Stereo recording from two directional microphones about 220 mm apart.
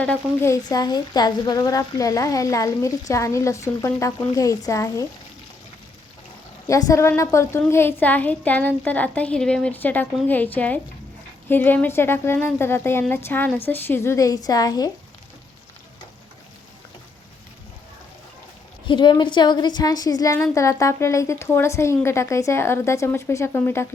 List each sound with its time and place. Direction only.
0.0 s a woman's voice: 10° left (ahead or behind)
6.7 s a woman's voice: 15° left (ahead or behind)
18.9 s a woman's voice: 20° left (ahead or behind)